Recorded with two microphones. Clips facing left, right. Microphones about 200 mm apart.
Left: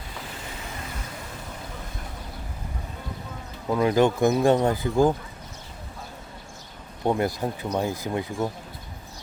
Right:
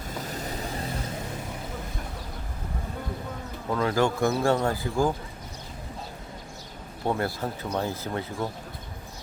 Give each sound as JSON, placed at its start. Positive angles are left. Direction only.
{"t": 0.1, "sound": "vehicle", "side_deg": -40}
{"t": 3.7, "sound": "speech", "side_deg": 15}
{"t": 7.0, "sound": "speech", "side_deg": 15}